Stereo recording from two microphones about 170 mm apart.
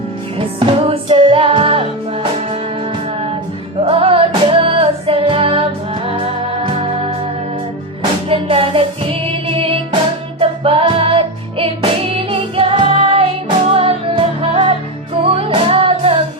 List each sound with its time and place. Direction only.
0.3 s music: 30° right (ahead or behind)
3.8 s music: 35° right (ahead or behind)
8.3 s music: 35° right (ahead or behind)